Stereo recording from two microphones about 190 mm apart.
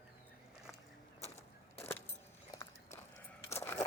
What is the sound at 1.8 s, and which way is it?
Vehicle, 10° left (ahead or behind).